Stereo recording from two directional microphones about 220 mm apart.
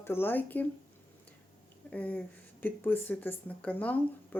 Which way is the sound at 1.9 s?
5° left (ahead or behind).